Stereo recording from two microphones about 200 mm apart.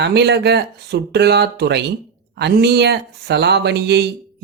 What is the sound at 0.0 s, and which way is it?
Speech, 55° right (ahead or behind).